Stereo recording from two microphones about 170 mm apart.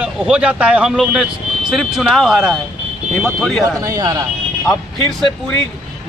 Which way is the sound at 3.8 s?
20° right (ahead or behind).